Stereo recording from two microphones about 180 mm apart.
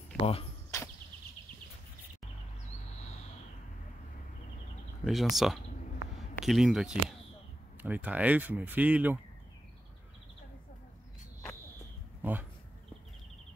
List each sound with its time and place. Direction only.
0.2 s speech: 30° left (ahead or behind)
0.7 s a sound: 15° left (ahead or behind)
5.0 s speech: centre (ahead or behind)
12.2 s speech: 10° right (ahead or behind)